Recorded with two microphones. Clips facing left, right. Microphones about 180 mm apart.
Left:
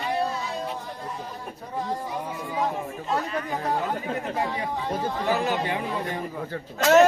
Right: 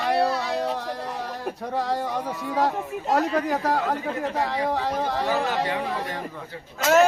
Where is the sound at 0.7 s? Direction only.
80° right.